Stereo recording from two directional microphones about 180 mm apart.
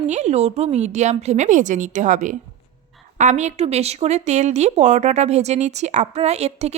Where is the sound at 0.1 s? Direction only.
40° right (ahead or behind).